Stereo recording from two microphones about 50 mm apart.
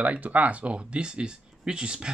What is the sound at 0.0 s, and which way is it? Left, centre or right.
Speech, right.